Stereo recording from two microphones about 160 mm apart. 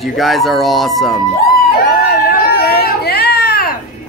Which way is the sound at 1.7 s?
70° left (ahead or behind).